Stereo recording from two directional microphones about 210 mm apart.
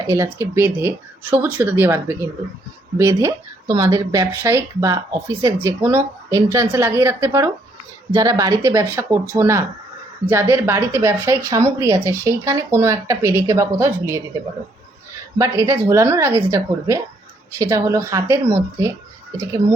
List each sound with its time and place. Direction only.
0.1 s speech: 15° right (ahead or behind)
15.4 s speech: 15° right (ahead or behind)